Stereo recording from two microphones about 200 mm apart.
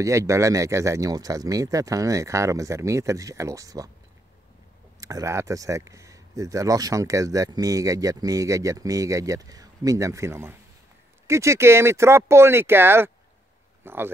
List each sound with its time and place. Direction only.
0.0 s speech: 15° right (ahead or behind)
5.0 s speech: 15° right (ahead or behind)